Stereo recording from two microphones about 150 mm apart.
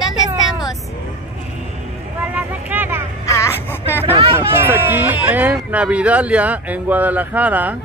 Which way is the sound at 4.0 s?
40° right (ahead or behind).